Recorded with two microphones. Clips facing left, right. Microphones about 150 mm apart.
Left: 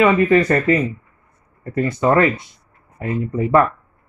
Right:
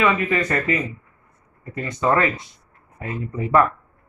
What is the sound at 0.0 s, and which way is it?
Speech, 35° left (ahead or behind).